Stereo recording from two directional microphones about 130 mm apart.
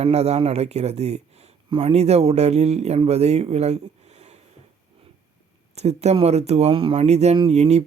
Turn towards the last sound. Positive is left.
turn(degrees=-55)  # may be behind; listen again after turning